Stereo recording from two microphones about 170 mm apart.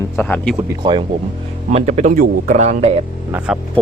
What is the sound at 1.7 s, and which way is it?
A man's voice, 40° right (ahead or behind).